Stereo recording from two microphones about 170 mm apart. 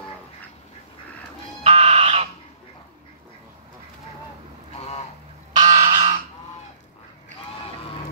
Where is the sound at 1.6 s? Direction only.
35° right (ahead or behind).